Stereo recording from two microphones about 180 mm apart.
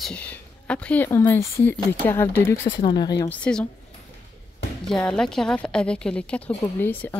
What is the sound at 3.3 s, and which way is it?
Speech, 5° left (ahead or behind).